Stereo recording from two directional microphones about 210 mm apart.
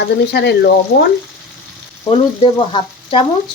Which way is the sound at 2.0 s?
25° left (ahead or behind).